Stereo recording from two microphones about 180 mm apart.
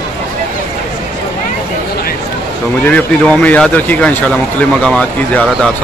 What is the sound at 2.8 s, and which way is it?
Speech, 10° left (ahead or behind).